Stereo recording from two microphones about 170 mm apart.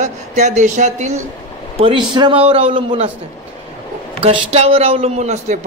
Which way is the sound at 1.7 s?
35° right (ahead or behind).